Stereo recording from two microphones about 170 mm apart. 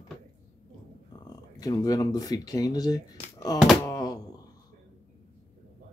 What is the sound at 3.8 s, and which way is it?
Thunk, 25° left (ahead or behind).